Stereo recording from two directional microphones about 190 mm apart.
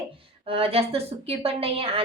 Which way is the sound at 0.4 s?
30° right (ahead or behind).